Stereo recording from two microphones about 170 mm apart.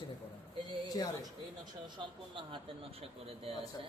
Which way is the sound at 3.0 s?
35° right (ahead or behind).